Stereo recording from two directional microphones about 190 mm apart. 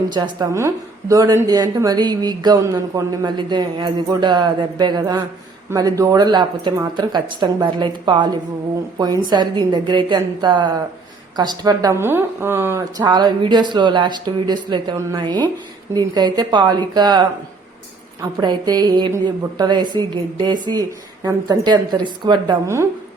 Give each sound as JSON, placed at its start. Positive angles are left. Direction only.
{"t": 0.1, "sound": "a woman's voice", "side_deg": -25}